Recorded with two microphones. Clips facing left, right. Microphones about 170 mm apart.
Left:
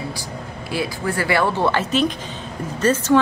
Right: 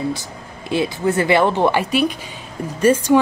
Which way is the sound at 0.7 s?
20° right (ahead or behind).